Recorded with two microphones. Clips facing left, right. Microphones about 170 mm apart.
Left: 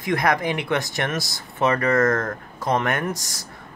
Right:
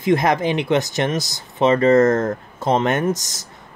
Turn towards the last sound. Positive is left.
turn(degrees=-20)  # may be behind; listen again after turning